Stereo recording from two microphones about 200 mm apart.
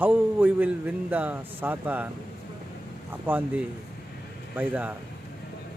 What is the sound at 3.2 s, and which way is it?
A man's voice, 10° right (ahead or behind).